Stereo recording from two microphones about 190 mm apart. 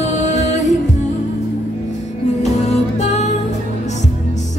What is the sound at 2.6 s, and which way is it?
Music, 35° left (ahead or behind).